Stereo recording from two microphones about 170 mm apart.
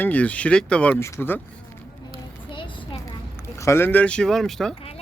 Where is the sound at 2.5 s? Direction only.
30° left (ahead or behind).